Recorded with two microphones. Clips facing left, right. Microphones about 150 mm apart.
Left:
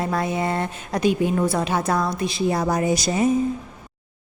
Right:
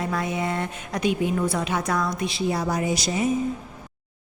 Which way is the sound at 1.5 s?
30° left (ahead or behind).